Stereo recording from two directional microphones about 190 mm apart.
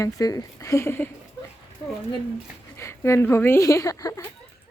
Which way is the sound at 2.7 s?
15° left (ahead or behind).